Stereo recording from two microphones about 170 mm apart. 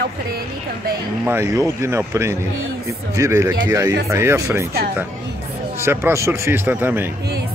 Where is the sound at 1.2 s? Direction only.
15° right (ahead or behind).